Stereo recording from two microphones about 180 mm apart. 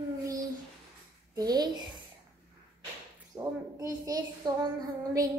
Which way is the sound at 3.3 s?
20° right (ahead or behind).